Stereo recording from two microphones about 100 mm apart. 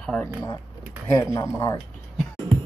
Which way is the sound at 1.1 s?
30° left (ahead or behind).